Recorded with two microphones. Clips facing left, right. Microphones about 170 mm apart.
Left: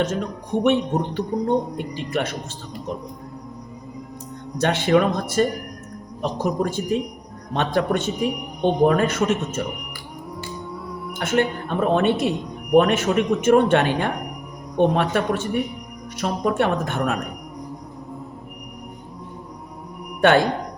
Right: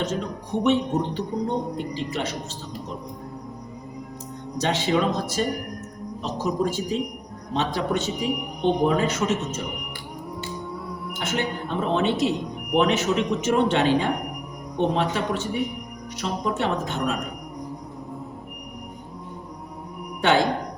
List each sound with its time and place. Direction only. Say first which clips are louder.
0.0 s speech: left 3 dB; 55° left (ahead or behind)
4.5 s speech: left 5 dB; 55° left (ahead or behind)
11.2 s speech: left 6 dB; 55° left (ahead or behind)